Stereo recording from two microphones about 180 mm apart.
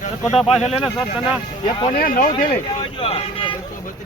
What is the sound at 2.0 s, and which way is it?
Speech, 50° left (ahead or behind).